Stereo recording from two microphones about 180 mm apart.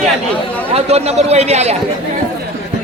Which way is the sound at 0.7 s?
35° right (ahead or behind).